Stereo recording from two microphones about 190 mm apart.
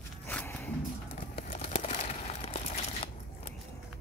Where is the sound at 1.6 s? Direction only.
35° left (ahead or behind).